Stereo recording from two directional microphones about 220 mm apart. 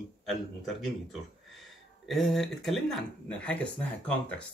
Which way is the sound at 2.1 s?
Centre (ahead or behind).